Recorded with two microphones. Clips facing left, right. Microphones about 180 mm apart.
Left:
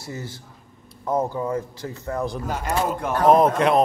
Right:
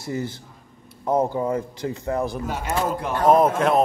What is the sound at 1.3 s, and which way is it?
Speech, 15° right (ahead or behind).